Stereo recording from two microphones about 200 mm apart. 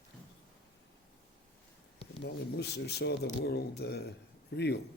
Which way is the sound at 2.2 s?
55° left (ahead or behind).